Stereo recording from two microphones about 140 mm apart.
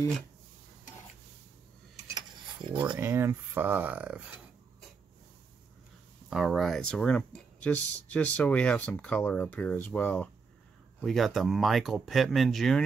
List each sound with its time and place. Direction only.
2.0 s dishes: 30° right (ahead or behind)
3.0 s speech: 20° right (ahead or behind)
6.3 s speech: centre (ahead or behind)